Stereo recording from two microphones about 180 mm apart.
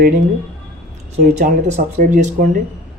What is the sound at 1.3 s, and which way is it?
A man's voice, 40° right (ahead or behind).